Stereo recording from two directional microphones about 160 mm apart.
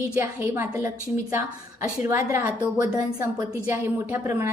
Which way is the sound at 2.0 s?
15° right (ahead or behind).